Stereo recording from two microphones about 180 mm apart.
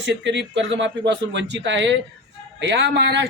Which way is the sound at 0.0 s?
80° right.